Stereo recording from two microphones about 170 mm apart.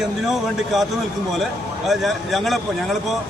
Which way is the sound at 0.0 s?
Centre (ahead or behind).